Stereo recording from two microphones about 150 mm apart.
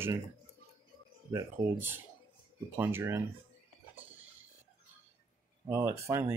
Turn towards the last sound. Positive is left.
turn(degrees=-20)  # may be behind; listen again after turning